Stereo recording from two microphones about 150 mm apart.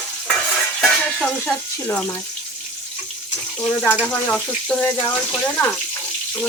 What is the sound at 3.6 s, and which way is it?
Speech, 15° left (ahead or behind).